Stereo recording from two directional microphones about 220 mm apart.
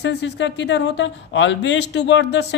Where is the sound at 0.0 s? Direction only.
50° left (ahead or behind).